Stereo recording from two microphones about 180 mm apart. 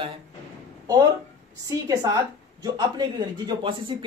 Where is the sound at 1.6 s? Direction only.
20° right (ahead or behind).